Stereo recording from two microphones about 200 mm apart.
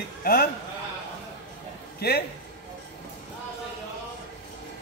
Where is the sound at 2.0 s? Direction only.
50° left (ahead or behind).